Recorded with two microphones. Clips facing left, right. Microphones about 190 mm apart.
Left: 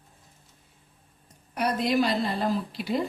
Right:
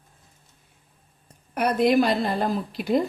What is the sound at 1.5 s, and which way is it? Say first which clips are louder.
A woman's voice: right 5 dB; 55° right (ahead or behind).